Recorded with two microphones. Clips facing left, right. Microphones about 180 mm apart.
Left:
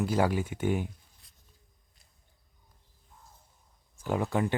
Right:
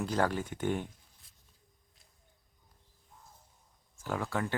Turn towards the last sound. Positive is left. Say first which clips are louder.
# left 5 dB
turn(degrees=20)  # may be behind; listen again after turning